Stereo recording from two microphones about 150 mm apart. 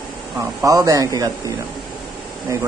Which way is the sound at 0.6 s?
20° right (ahead or behind).